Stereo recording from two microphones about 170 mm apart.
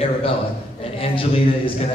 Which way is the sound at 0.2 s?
35° left (ahead or behind).